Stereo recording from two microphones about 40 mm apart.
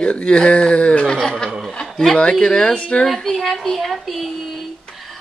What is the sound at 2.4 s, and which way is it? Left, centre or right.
Speech, centre.